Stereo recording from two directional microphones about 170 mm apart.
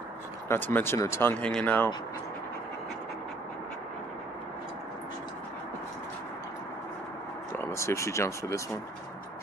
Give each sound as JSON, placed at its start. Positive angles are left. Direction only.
{"t": 0.5, "sound": "speech", "side_deg": 10}
{"t": 7.5, "sound": "speech", "side_deg": 15}